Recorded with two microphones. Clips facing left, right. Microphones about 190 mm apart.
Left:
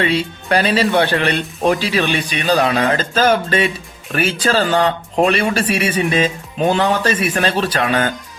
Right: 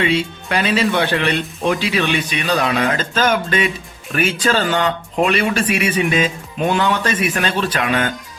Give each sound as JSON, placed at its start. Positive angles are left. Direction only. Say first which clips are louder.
{"t": 0.0, "sound": "speech", "louder": "even", "side_deg": 35}